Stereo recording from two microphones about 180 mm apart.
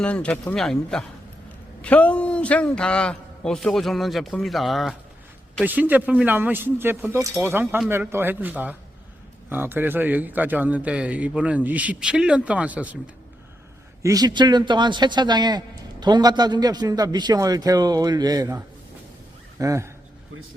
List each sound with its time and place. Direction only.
0.0 s a man's voice: 5° left (ahead or behind)
14.0 s a man's voice: 20° right (ahead or behind)